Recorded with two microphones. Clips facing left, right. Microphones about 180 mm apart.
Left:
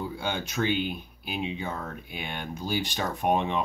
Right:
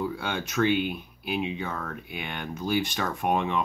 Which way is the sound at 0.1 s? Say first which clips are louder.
Right 1 dB; 20° left (ahead or behind).